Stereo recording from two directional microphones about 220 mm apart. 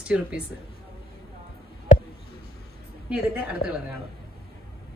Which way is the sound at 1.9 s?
35° left (ahead or behind).